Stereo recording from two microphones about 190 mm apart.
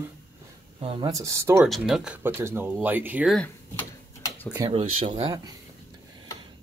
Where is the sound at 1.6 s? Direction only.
Centre (ahead or behind).